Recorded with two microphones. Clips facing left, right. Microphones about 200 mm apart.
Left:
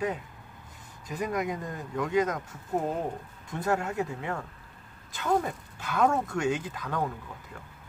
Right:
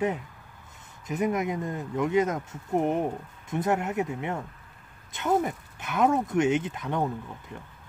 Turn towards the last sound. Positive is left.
turn(degrees=-25)  # may be behind; listen again after turning